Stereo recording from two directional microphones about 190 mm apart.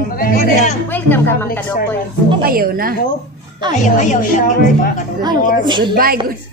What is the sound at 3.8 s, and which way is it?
A woman's voice, 40° left (ahead or behind).